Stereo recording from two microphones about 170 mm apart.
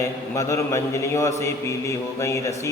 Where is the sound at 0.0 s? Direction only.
15° left (ahead or behind).